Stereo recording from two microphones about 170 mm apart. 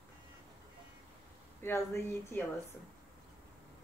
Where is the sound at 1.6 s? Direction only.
15° left (ahead or behind).